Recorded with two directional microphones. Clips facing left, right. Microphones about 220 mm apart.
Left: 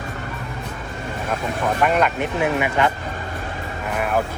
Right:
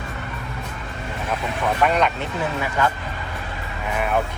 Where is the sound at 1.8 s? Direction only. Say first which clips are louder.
Left 1 dB; centre (ahead or behind).